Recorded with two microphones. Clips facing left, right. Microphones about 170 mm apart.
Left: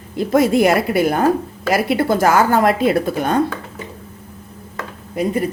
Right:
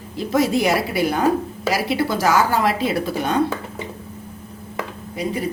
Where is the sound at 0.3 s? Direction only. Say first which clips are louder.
Left 4 dB; 55° left (ahead or behind).